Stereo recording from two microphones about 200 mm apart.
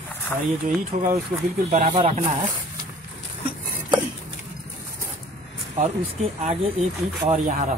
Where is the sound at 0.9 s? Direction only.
35° right (ahead or behind).